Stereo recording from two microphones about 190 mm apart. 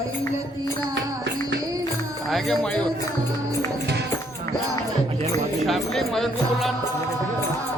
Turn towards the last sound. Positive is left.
turn(degrees=0)  # may be behind; listen again after turning